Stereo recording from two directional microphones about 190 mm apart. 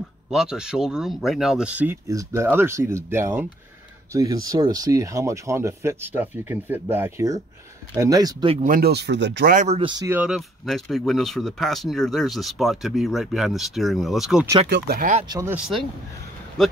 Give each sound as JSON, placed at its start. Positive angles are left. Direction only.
{"t": 0.3, "sound": "speech", "side_deg": -5}
{"t": 8.6, "sound": "speech", "side_deg": -50}
{"t": 9.5, "sound": "speech", "side_deg": -40}
{"t": 10.0, "sound": "speech", "side_deg": -5}
{"t": 14.7, "sound": "speech", "side_deg": -50}
{"t": 15.2, "sound": "speech", "side_deg": -20}
{"t": 15.5, "sound": "speech", "side_deg": -5}